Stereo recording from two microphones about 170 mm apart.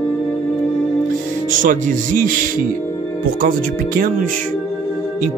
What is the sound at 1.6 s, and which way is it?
Speech, 50° right (ahead or behind).